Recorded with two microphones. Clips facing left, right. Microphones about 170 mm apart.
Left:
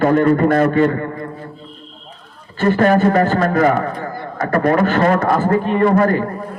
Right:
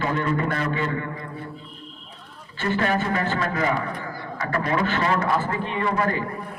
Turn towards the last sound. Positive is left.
turn(degrees=50)  # may be behind; listen again after turning